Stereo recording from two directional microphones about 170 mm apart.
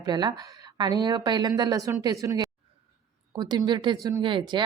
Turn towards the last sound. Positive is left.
turn(degrees=-30)  # may be behind; listen again after turning